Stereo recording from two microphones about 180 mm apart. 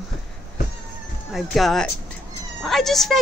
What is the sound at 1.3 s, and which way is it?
Speech, centre (ahead or behind).